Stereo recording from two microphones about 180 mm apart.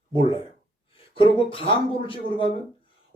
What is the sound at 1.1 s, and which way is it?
Speech, 30° left (ahead or behind).